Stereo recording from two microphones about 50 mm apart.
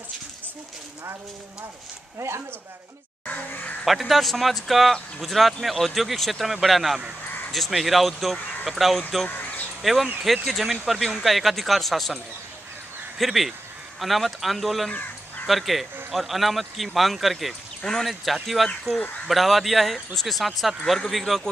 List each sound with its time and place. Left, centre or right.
2.1 s speech: right
3.8 s speech: centre
13.2 s speech: centre
14.9 s crow: left
15.4 s speech: centre